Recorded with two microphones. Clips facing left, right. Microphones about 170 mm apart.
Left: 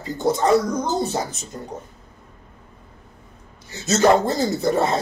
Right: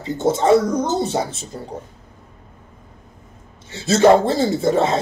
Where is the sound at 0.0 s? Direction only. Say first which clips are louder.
Right 2 dB; 25° right (ahead or behind).